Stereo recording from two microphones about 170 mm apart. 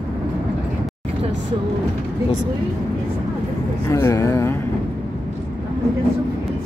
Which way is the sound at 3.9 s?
15° left (ahead or behind).